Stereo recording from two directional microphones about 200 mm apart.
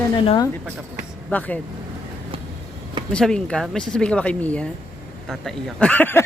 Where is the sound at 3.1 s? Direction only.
5° left (ahead or behind).